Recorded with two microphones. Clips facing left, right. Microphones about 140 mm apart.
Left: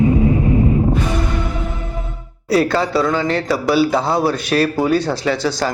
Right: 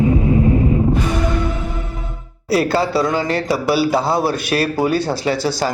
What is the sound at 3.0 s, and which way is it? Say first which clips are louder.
Speech: left 1 dB; 40° right (ahead or behind).